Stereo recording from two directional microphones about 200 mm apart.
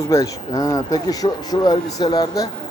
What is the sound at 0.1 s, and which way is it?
Speech, 15° left (ahead or behind).